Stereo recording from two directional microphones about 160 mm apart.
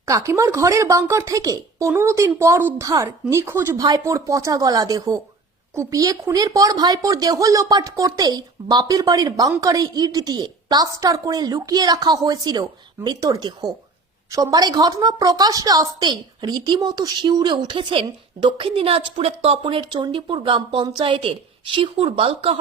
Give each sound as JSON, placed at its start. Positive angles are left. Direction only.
{"t": 0.0, "sound": "a woman's voice", "side_deg": -20}